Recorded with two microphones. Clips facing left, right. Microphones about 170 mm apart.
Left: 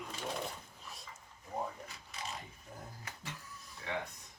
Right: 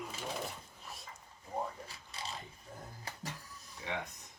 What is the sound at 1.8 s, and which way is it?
Shuffling cards, 30° right (ahead or behind).